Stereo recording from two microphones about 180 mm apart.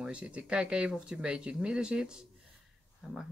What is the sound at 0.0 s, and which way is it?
Speech, 5° right (ahead or behind).